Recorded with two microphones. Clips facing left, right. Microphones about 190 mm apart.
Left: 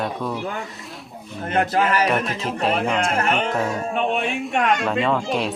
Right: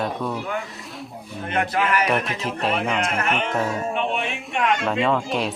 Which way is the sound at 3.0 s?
35° left (ahead or behind).